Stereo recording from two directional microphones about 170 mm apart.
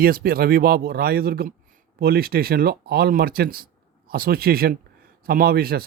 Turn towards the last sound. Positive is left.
turn(degrees=-60)  # may be behind; listen again after turning